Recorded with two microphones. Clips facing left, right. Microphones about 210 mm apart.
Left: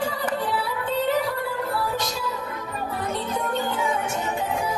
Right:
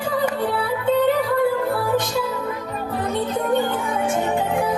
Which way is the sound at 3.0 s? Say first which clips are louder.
Right 6 dB; 55° right (ahead or behind).